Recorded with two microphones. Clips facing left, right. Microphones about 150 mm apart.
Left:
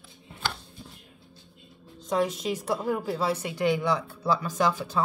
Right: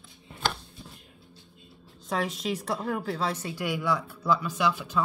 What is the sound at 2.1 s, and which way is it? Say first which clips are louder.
A woman's voice: left 3 dB; centre (ahead or behind).